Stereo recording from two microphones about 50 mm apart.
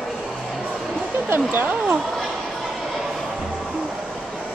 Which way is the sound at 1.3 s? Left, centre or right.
Right.